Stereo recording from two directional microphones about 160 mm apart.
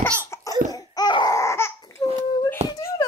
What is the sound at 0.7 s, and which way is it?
Laughter, 25° left (ahead or behind).